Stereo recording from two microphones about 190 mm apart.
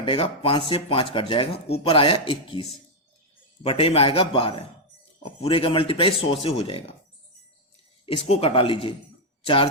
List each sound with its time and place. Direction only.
0.0 s speech: 30° left (ahead or behind)
8.0 s speech: 30° left (ahead or behind)